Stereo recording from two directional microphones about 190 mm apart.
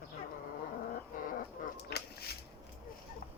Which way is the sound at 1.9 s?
55° left (ahead or behind).